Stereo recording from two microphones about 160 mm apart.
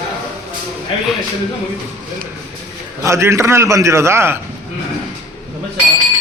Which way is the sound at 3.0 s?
15° right (ahead or behind).